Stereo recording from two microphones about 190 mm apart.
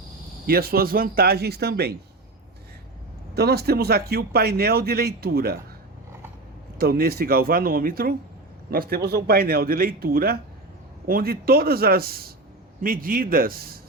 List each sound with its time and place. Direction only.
0.4 s speech: 55° right (ahead or behind)
3.3 s speech: 60° right (ahead or behind)
6.7 s speech: 50° right (ahead or behind)